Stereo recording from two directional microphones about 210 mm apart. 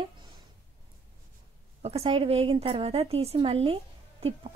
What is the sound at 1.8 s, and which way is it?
Speech, 30° right (ahead or behind).